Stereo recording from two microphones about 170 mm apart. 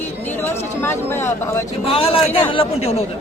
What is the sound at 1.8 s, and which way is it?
Speech, 35° left (ahead or behind).